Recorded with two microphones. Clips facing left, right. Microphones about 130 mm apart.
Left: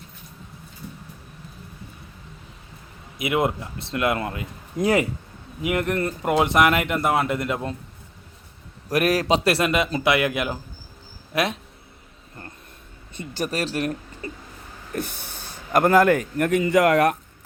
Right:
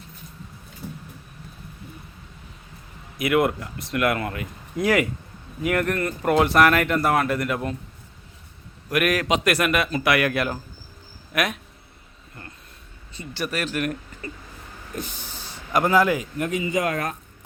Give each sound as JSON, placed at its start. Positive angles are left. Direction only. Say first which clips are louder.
{"t": 3.2, "sound": "speech", "louder": "right 2 dB", "side_deg": 20}
{"t": 8.9, "sound": "speech", "louder": "left 2 dB", "side_deg": 35}
{"t": 13.1, "sound": "speech", "louder": "left 2 dB", "side_deg": 40}
{"t": 14.9, "sound": "a man's voice", "louder": "left 4 dB", "side_deg": 55}